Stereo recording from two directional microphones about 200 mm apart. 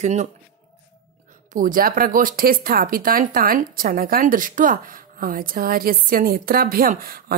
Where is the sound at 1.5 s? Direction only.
40° right (ahead or behind).